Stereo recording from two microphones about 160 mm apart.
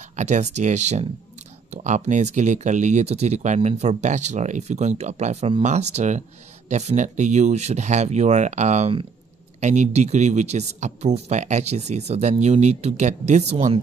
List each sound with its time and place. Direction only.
0.1 s speech: 50° right (ahead or behind)